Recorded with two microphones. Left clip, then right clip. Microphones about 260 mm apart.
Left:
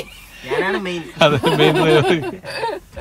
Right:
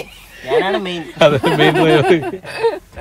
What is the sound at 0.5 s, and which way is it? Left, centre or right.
Speech, centre.